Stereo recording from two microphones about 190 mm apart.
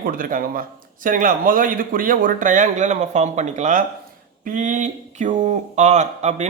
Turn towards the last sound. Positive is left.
turn(degrees=-35)  # may be behind; listen again after turning